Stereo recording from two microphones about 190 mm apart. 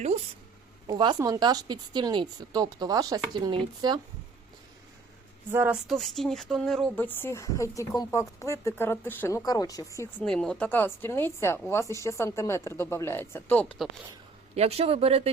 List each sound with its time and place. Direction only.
0.9 s a woman's voice: 20° right (ahead or behind)
5.5 s speech: 10° right (ahead or behind)
5.9 s speech: centre (ahead or behind)
10.2 s speech: 5° left (ahead or behind)
14.5 s speech: 35° right (ahead or behind)